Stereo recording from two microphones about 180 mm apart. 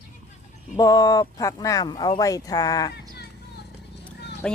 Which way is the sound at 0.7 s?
20° left (ahead or behind).